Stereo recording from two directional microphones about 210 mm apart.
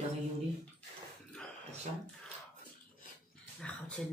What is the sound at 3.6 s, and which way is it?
Dog, 5° left (ahead or behind).